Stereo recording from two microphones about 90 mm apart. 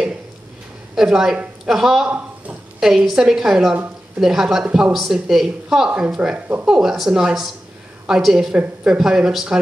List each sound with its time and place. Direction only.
0.9 s speech: 5° right (ahead or behind)
4.6 s speech: 15° right (ahead or behind)
4.9 s speech: centre (ahead or behind)
5.9 s speech: 15° right (ahead or behind)